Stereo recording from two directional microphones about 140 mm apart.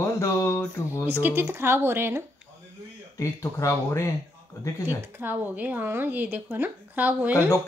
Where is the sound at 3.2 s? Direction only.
20° left (ahead or behind).